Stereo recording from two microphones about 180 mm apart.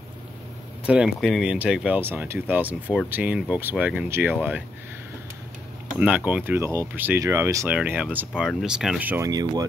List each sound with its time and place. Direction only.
0.8 s speech: 5° right (ahead or behind)
5.9 s speech: 10° right (ahead or behind)
9.3 s speech: 20° right (ahead or behind)